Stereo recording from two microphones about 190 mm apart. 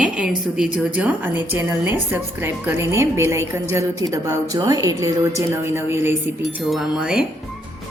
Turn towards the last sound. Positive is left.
turn(degrees=-5)  # may be behind; listen again after turning